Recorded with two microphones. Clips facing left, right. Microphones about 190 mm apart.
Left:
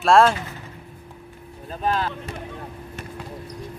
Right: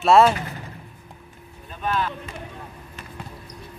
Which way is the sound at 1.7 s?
35° left (ahead or behind).